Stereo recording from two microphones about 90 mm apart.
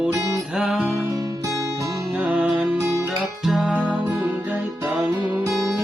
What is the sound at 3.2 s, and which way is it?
Music, centre (ahead or behind).